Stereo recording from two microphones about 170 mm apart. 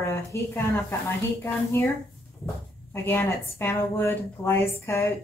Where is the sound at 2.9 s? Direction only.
15° left (ahead or behind).